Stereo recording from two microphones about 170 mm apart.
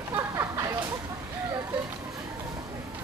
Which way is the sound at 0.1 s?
20° right (ahead or behind).